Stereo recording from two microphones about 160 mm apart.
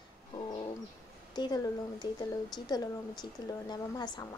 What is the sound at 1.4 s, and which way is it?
A woman's voice, 25° left (ahead or behind).